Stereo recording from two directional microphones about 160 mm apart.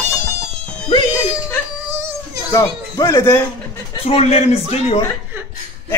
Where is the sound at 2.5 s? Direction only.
20° left (ahead or behind).